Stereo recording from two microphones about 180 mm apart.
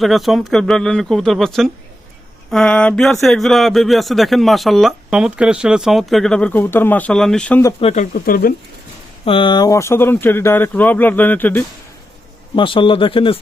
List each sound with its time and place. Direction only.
0.0 s speech: centre (ahead or behind)
7.8 s speech: 35° left (ahead or behind)
8.1 s speech: 55° left (ahead or behind)
9.2 s speech: 30° left (ahead or behind); by 11.6 s 10° left (ahead or behind)
12.5 s a man's voice: 30° left (ahead or behind)